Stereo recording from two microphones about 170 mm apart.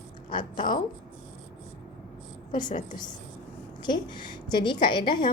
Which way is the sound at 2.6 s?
45° left (ahead or behind).